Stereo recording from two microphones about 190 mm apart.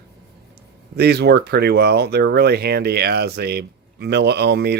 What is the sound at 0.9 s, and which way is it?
Speech, 60° right (ahead or behind).